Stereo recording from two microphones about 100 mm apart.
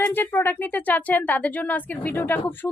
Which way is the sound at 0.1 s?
20° left (ahead or behind).